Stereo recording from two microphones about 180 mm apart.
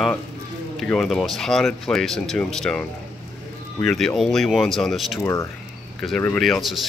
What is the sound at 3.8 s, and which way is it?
Speech, 5° left (ahead or behind).